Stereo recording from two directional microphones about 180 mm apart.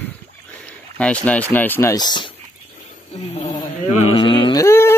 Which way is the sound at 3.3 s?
35° left (ahead or behind).